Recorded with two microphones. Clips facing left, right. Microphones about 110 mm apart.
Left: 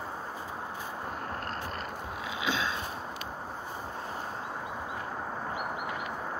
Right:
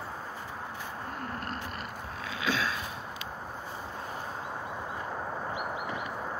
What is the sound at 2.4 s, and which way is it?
Sniff, 20° left (ahead or behind).